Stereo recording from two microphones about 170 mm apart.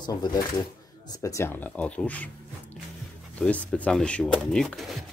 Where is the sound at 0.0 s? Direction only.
25° left (ahead or behind); by 2.3 s 10° left (ahead or behind).